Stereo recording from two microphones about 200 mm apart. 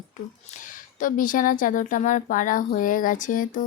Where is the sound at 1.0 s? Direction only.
45° left (ahead or behind).